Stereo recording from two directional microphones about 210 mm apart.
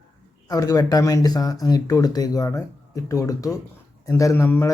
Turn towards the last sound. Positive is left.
turn(degrees=10)  # may be behind; listen again after turning